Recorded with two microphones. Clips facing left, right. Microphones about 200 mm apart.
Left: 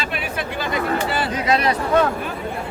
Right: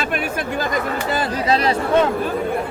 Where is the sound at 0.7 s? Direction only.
40° right (ahead or behind).